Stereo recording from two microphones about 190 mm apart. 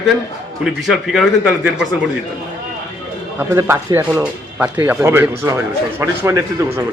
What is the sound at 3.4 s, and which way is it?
Speech, 15° right (ahead or behind).